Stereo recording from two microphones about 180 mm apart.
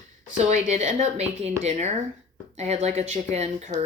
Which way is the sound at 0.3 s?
40° right (ahead or behind).